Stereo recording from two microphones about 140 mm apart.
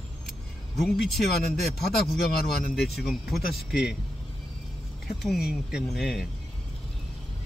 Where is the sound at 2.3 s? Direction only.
90° left.